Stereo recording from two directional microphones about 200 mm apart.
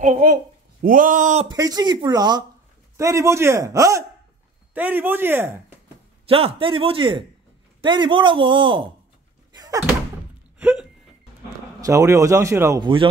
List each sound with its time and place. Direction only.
0.0 s speech: 40° right (ahead or behind)
1.5 s a man's voice: 20° right (ahead or behind)
6.2 s a man's voice: 30° right (ahead or behind)
9.5 s door: 20° right (ahead or behind)
10.6 s hiccup: 5° right (ahead or behind)
11.8 s a man's voice: 15° right (ahead or behind)
12.8 s a man's voice: 25° right (ahead or behind)